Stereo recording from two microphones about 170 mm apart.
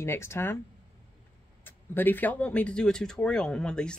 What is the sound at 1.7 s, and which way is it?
Speech, 10° left (ahead or behind).